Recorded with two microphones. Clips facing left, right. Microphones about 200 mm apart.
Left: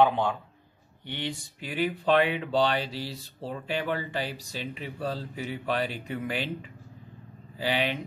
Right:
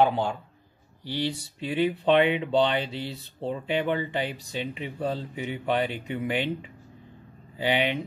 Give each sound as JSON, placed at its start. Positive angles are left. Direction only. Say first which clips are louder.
{"t": 0.0, "sound": "a man's voice", "louder": "even", "side_deg": -30}
{"t": 7.5, "sound": "speech", "louder": "right 3 dB", "side_deg": -20}